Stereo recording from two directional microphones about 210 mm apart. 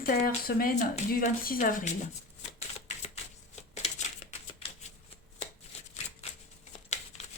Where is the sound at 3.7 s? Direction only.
30° left (ahead or behind).